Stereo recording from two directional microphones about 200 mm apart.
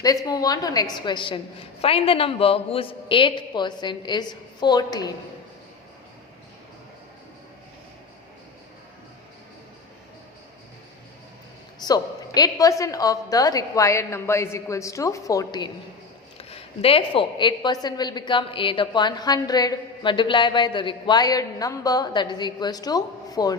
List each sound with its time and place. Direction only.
0.0 s a woman's voice: 20° left (ahead or behind)
11.8 s a woman's voice: 20° left (ahead or behind)
16.4 s a woman's voice: 30° left (ahead or behind)